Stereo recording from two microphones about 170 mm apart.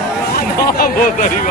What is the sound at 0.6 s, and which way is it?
Speech, 55° left (ahead or behind).